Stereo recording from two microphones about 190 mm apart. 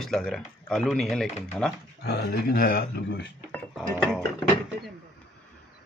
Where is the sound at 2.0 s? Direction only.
55° left (ahead or behind).